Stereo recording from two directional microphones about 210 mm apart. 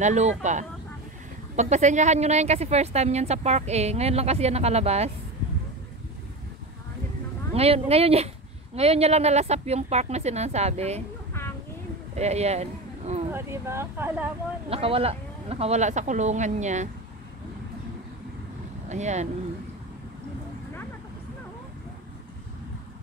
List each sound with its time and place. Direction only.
0.0 s a woman's voice: 35° right (ahead or behind)
7.5 s a woman's voice: 30° right (ahead or behind)
12.2 s speech: 30° right (ahead or behind)
13.3 s speech: 10° right (ahead or behind)
14.7 s a woman's voice: 25° right (ahead or behind)
18.9 s speech: 35° right (ahead or behind)